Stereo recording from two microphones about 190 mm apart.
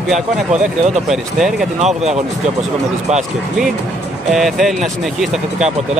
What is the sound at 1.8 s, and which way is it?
Speech, 35° right (ahead or behind).